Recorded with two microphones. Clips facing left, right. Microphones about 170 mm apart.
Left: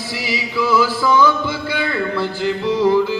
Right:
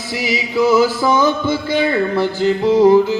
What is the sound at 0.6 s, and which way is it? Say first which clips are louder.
Music: right 6 dB; 45° right (ahead or behind).